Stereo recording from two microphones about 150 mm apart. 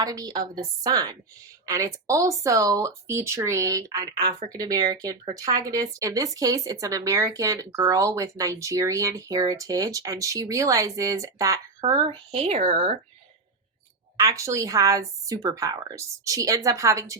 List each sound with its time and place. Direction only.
0.0 s speech: 25° right (ahead or behind)
12.3 s speech: 50° right (ahead or behind)
14.2 s speech: 20° right (ahead or behind)